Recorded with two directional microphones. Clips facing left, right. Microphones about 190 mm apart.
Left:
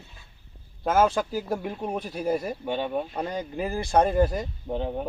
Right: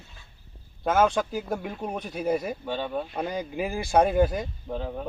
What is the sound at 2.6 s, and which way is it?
Speech, 15° left (ahead or behind).